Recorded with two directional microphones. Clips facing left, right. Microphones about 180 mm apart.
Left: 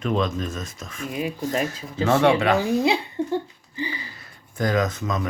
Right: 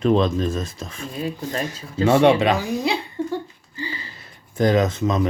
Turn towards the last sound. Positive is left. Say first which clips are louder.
# right 5 dB
turn(degrees=-25)  # may be behind; listen again after turning